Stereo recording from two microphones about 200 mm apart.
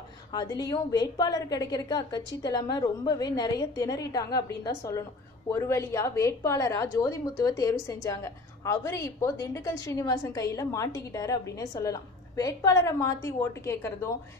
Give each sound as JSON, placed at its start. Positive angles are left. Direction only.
{"t": 0.3, "sound": "a woman's voice", "side_deg": 20}